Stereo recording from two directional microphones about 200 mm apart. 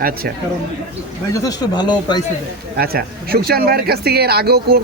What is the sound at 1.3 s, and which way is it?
Speech, 20° left (ahead or behind).